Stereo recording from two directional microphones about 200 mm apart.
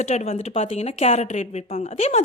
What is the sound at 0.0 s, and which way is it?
A woman's voice, 35° left (ahead or behind).